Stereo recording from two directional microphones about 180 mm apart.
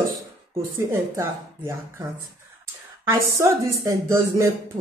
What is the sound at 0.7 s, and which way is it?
Speech, 15° right (ahead or behind).